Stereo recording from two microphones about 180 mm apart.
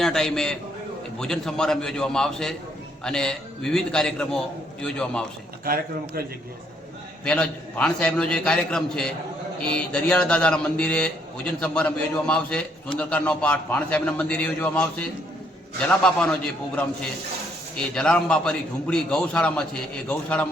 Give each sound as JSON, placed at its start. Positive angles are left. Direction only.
{"t": 0.0, "sound": "a man's voice", "side_deg": 0}
{"t": 5.6, "sound": "a man's voice", "side_deg": -55}
{"t": 7.3, "sound": "a man's voice", "side_deg": 5}
{"t": 17.7, "sound": "a man's voice", "side_deg": 5}